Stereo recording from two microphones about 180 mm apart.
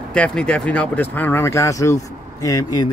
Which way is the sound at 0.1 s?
5° left (ahead or behind).